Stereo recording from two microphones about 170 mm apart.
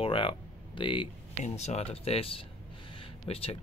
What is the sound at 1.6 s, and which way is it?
Speech, 40° left (ahead or behind).